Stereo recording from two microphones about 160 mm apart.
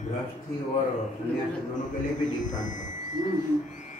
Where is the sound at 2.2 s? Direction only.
50° left (ahead or behind).